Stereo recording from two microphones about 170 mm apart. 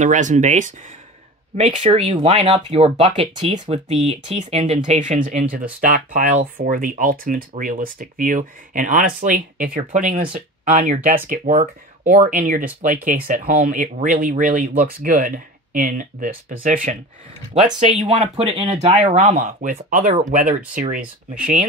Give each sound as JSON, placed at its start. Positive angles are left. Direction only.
{"t": 0.0, "sound": "speech", "side_deg": -45}
{"t": 18.0, "sound": "speech", "side_deg": -40}